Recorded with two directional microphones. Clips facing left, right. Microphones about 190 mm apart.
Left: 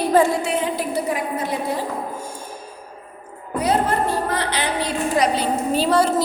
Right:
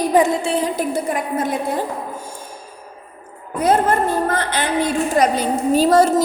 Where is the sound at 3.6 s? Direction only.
50° right (ahead or behind).